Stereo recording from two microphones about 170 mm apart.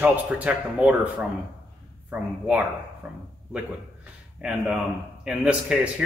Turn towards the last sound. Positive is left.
turn(degrees=-5)  # may be behind; listen again after turning